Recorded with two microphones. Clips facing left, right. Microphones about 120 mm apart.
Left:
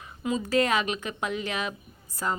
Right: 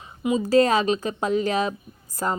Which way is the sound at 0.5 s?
35° right (ahead or behind).